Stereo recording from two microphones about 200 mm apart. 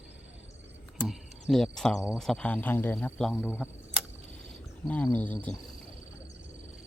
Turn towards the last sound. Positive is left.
turn(degrees=5)  # may be behind; listen again after turning